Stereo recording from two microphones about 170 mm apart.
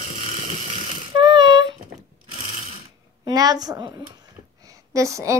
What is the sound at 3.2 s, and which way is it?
A woman's voice, 20° right (ahead or behind).